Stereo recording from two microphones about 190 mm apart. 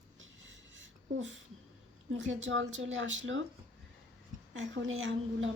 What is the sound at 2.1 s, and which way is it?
Speech, 85° right.